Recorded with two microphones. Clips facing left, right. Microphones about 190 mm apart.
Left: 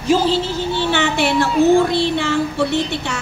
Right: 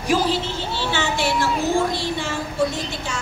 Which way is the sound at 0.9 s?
60° left (ahead or behind).